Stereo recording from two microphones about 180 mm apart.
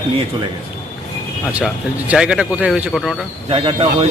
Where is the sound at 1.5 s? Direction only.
10° right (ahead or behind).